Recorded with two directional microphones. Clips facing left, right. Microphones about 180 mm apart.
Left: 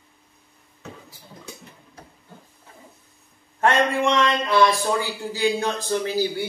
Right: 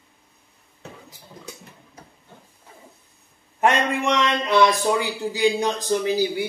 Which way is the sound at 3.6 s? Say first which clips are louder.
Left 1 dB; 15° right (ahead or behind).